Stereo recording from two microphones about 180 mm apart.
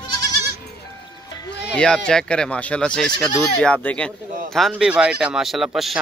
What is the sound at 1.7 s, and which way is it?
Speech, 5° left (ahead or behind).